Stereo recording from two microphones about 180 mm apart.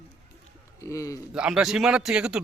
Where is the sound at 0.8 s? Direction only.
15° left (ahead or behind).